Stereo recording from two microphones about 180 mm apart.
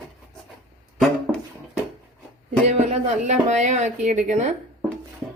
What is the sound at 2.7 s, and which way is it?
Speech, 40° right (ahead or behind).